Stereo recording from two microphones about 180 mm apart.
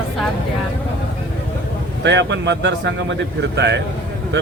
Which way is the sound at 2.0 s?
80° right.